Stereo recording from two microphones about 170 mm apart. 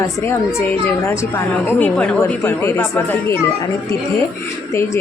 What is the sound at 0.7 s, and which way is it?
A woman's voice, 15° left (ahead or behind).